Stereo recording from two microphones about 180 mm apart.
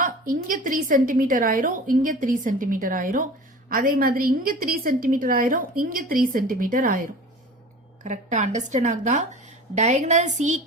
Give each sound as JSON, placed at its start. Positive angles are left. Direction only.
{"t": 0.0, "sound": "a woman's voice", "side_deg": -50}
{"t": 8.0, "sound": "a woman's voice", "side_deg": -40}